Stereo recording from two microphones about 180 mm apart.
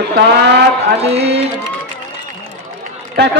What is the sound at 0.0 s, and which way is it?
Speech, 65° right (ahead or behind).